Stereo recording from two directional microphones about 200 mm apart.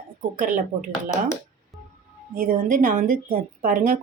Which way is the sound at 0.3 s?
40° right (ahead or behind).